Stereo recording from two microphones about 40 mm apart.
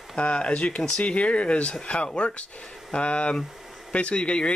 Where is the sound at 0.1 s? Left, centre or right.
Left.